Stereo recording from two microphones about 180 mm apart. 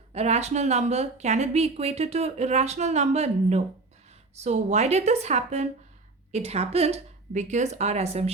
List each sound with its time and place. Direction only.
0.1 s speech: 35° right (ahead or behind)